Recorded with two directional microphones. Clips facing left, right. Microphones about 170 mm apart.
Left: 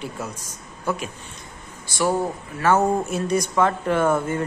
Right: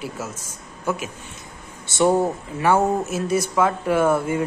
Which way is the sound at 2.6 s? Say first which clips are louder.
Even; 10° right (ahead or behind).